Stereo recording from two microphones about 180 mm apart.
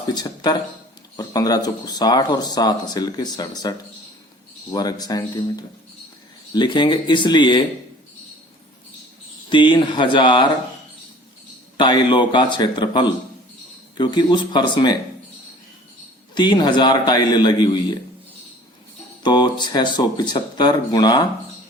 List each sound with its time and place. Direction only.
0.1 s speech: 25° left (ahead or behind)
9.5 s speech: 25° left (ahead or behind)
11.8 s speech: 25° left (ahead or behind)
16.3 s speech: 25° left (ahead or behind)
19.2 s speech: 25° left (ahead or behind)